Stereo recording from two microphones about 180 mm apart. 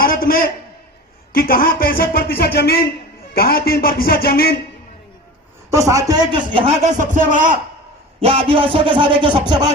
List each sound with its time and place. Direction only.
0.0 s a sound: 55° left (ahead or behind)
1.3 s a man's voice: 55° left (ahead or behind)
5.7 s a man's voice: 15° right (ahead or behind); by 7.6 s 45° right (ahead or behind)
8.2 s speech: 30° right (ahead or behind)